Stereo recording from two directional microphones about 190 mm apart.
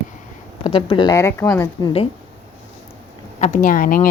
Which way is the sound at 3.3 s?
40° left (ahead or behind).